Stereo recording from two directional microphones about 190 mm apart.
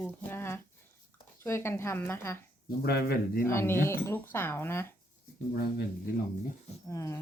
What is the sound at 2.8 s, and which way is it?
Speech, 55° left (ahead or behind).